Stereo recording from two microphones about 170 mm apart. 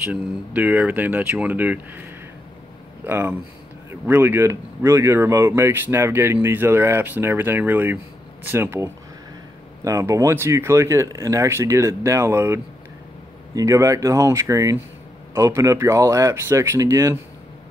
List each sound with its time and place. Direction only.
0.0 s speech: 10° right (ahead or behind)
3.1 s speech: 10° right (ahead or behind)